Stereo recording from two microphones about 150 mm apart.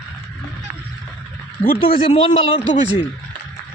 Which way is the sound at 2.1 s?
40° left (ahead or behind).